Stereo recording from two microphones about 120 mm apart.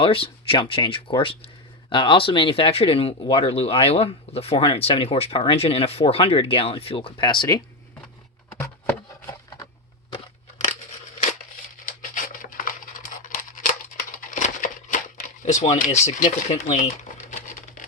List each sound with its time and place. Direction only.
0.0 s speech: 50° left (ahead or behind)
12.8 s scissors: 90° left
15.4 s speech: 70° left (ahead or behind)
16.0 s a sound: 80° left